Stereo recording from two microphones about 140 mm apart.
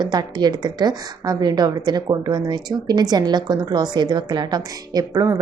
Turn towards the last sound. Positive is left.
turn(degrees=-25)  # may be behind; listen again after turning